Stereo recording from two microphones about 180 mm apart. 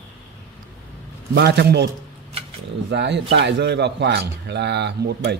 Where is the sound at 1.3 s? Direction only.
65° right (ahead or behind).